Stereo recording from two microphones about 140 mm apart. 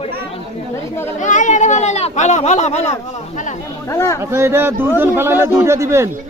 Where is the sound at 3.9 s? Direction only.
20° left (ahead or behind).